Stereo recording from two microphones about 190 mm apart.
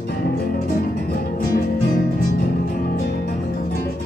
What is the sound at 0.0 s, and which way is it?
Music, 55° left (ahead or behind).